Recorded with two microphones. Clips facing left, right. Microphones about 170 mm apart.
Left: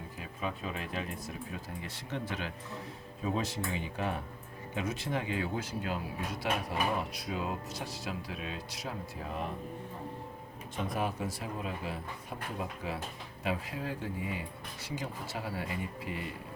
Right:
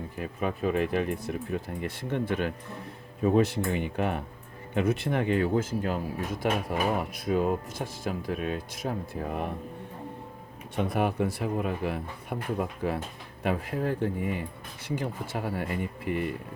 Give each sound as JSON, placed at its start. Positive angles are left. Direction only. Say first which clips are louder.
{"t": 0.2, "sound": "speech", "louder": "right 8 dB", "side_deg": -60}
{"t": 10.8, "sound": "speech", "louder": "right 7 dB", "side_deg": -65}